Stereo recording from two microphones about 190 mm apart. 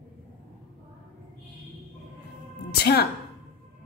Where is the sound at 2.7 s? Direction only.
55° left (ahead or behind).